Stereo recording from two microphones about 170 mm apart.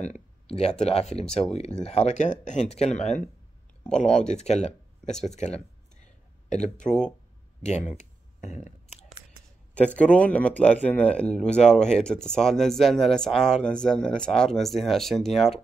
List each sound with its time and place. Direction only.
0.0 s speech: 40° left (ahead or behind)
3.9 s speech: 5° left (ahead or behind)
4.3 s speech: 40° left (ahead or behind)
5.2 s a sound: 40° left (ahead or behind)
7.6 s speech: 45° left (ahead or behind)
8.0 s a sound: 45° left (ahead or behind)
9.8 s speech: 5° left (ahead or behind)